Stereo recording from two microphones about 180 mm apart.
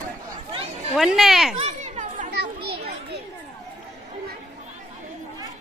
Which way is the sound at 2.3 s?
65° right (ahead or behind).